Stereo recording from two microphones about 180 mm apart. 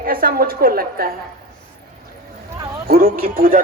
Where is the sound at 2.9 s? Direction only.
55° right (ahead or behind).